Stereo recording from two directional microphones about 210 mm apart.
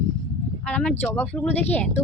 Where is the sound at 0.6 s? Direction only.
5° left (ahead or behind).